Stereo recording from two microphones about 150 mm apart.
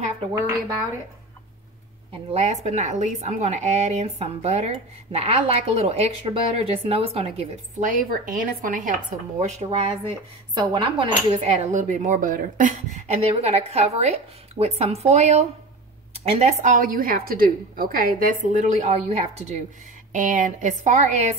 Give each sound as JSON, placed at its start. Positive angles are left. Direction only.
{"t": 2.3, "sound": "speech", "side_deg": -50}
{"t": 7.8, "sound": "a woman's voice", "side_deg": -65}
{"t": 10.5, "sound": "speech", "side_deg": -30}
{"t": 16.7, "sound": "a woman's voice", "side_deg": -70}
{"t": 20.1, "sound": "a woman's voice", "side_deg": -55}